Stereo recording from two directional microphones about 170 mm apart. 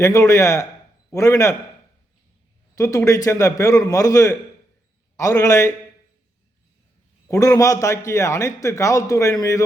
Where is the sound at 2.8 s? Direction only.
20° left (ahead or behind).